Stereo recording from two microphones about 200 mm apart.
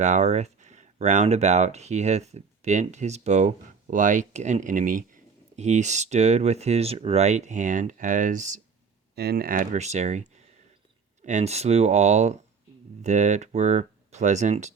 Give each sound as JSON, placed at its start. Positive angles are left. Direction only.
{"t": 0.0, "sound": "speech", "side_deg": -35}
{"t": 9.1, "sound": "speech", "side_deg": -50}